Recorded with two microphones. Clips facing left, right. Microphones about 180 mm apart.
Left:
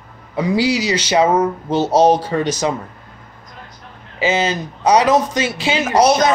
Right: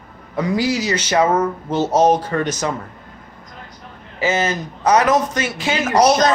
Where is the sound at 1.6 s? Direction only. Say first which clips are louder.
Left 2 dB; 30° left (ahead or behind).